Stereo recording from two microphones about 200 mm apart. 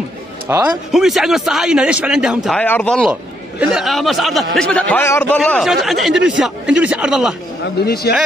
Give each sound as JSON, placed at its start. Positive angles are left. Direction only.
{"t": 0.5, "sound": "speech", "side_deg": -10}
{"t": 0.9, "sound": "speech", "side_deg": 0}
{"t": 2.6, "sound": "a man's voice", "side_deg": 5}
{"t": 5.4, "sound": "speech", "side_deg": 0}
{"t": 7.8, "sound": "speech", "side_deg": 50}